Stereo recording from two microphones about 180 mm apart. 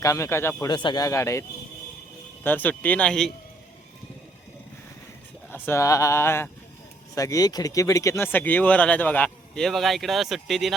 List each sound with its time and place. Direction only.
0.0 s speech: 15° left (ahead or behind)
5.5 s speech: 10° left (ahead or behind)